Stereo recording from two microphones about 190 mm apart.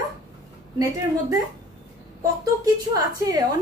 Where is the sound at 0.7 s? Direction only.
20° right (ahead or behind).